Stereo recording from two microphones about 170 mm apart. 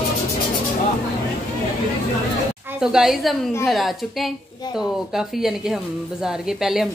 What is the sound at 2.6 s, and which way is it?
A woman's voice, 5° right (ahead or behind).